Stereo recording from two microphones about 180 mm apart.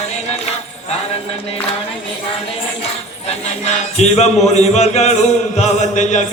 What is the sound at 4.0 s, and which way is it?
A man's voice, 40° left (ahead or behind).